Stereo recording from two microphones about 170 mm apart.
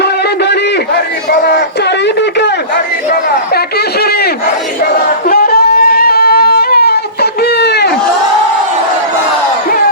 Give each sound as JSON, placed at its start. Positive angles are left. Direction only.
{"t": 0.0, "sound": "a sound", "side_deg": 75}
{"t": 3.1, "sound": "chatter", "side_deg": 65}
{"t": 5.0, "sound": "wind instrument", "side_deg": 65}